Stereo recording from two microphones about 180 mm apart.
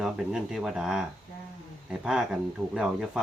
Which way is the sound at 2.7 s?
Centre (ahead or behind).